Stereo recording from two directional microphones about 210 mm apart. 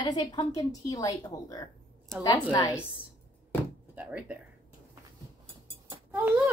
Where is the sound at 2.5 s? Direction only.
20° left (ahead or behind).